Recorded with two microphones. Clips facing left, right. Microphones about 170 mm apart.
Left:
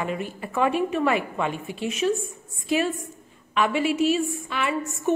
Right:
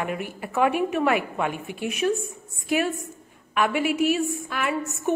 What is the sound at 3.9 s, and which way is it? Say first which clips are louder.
Speech: left 1 dB; 60° right (ahead or behind).